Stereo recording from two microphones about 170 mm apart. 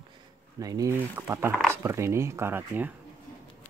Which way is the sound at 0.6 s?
20° right (ahead or behind).